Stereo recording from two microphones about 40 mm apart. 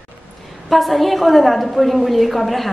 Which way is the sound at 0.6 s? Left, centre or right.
Centre.